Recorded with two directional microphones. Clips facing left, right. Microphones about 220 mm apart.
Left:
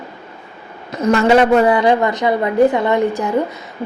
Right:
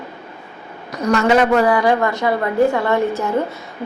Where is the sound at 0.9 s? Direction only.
30° left (ahead or behind).